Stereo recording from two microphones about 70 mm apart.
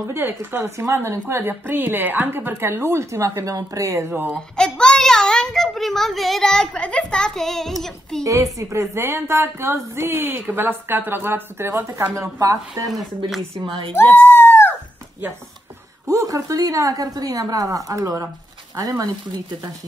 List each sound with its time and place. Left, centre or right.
0.1 s a woman's voice: right
4.1 s speech: right
4.6 s a child's voice: centre
8.2 s a woman's voice: right
12.2 s speech: right
13.9 s a sound: left
16.1 s a woman's voice: right